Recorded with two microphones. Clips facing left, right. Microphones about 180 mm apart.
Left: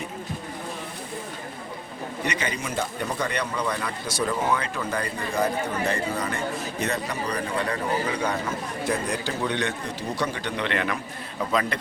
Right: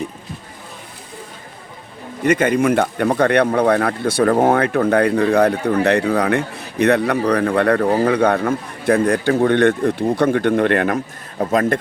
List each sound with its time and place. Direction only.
2.2 s speech: 50° right (ahead or behind)